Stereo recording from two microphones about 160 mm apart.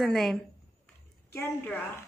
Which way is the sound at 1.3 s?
15° left (ahead or behind).